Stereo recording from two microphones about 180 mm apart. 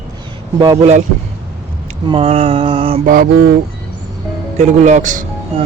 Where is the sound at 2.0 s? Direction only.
30° right (ahead or behind).